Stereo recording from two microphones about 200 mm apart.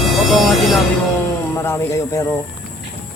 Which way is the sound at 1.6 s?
15° left (ahead or behind).